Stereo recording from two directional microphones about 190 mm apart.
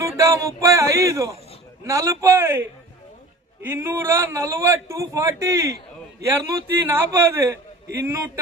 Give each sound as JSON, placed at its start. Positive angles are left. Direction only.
{"t": 0.0, "sound": "a man's voice", "side_deg": -15}